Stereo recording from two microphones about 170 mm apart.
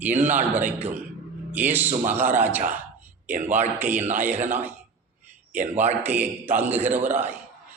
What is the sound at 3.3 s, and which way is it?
Speech, 45° right (ahead or behind).